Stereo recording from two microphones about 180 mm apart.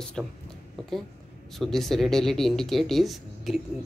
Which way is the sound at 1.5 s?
Centre (ahead or behind).